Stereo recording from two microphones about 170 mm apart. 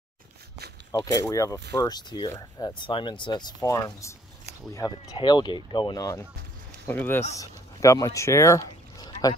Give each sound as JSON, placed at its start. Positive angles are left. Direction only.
{"t": 1.1, "sound": "speech", "side_deg": 20}